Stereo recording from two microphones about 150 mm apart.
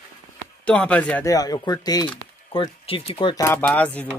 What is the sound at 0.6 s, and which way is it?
Speech, 10° left (ahead or behind).